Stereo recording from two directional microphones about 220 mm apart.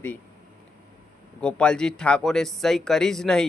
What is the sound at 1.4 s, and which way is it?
A man's voice, 5° left (ahead or behind).